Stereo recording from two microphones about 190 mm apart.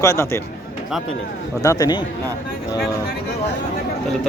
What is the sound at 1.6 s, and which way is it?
Speech, 20° left (ahead or behind).